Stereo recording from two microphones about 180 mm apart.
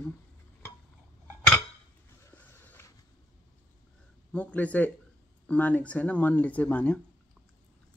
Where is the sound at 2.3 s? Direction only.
10° left (ahead or behind).